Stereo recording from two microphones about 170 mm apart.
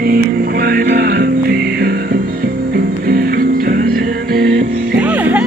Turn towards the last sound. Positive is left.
turn(degrees=-10)  # may be behind; listen again after turning